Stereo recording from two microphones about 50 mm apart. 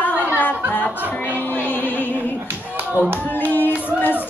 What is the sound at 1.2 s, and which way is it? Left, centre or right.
Music, left.